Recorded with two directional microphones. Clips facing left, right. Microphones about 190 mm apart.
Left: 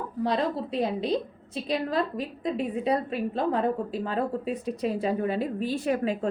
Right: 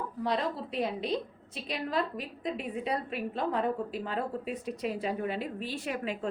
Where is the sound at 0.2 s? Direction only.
35° left (ahead or behind).